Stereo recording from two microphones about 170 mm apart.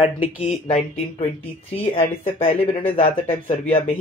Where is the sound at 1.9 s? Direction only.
35° left (ahead or behind).